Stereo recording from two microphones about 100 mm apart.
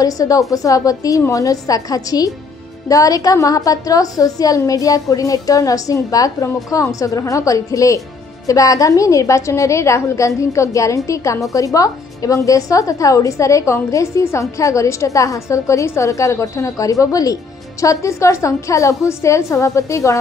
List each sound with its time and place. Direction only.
0.0 s a woman's voice: 35° left (ahead or behind)